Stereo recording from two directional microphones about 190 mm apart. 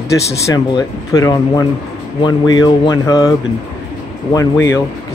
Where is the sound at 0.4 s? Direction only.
20° left (ahead or behind).